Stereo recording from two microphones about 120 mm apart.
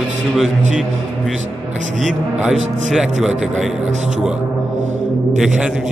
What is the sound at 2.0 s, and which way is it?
A man's voice, centre (ahead or behind).